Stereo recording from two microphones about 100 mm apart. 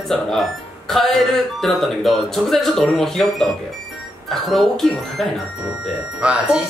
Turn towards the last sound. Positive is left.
turn(degrees=-10)  # may be behind; listen again after turning